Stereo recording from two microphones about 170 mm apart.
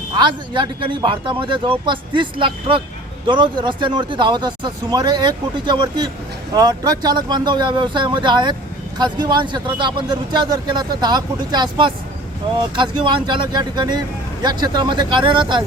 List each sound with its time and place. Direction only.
0.1 s speech: 25° right (ahead or behind)